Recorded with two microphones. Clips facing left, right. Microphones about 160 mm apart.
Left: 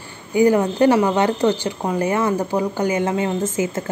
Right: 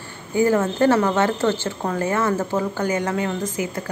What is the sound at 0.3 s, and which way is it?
Speech, 15° left (ahead or behind).